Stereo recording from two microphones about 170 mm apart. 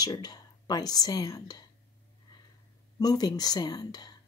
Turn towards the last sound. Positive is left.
turn(degrees=25)  # may be behind; listen again after turning